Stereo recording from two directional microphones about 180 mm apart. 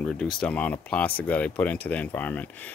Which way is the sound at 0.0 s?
5° left (ahead or behind).